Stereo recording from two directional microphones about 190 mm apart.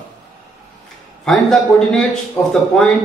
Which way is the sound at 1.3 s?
Centre (ahead or behind).